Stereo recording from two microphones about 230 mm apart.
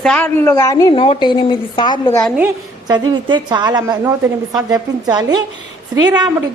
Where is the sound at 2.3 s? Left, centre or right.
Centre.